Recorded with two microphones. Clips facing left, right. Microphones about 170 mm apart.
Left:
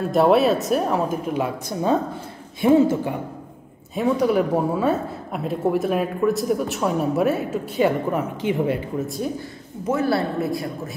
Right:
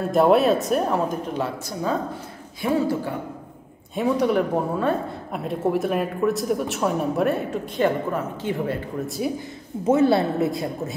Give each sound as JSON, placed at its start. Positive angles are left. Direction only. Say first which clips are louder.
{"t": 0.1, "sound": "a woman's voice", "louder": "even", "side_deg": 0}
{"t": 1.7, "sound": "speech", "louder": "left 4 dB", "side_deg": 25}
{"t": 3.9, "sound": "a woman's voice", "louder": "left 1 dB", "side_deg": 0}
{"t": 9.0, "sound": "a woman's voice", "louder": "even", "side_deg": 0}
{"t": 9.8, "sound": "speech", "louder": "right 3 dB", "side_deg": -25}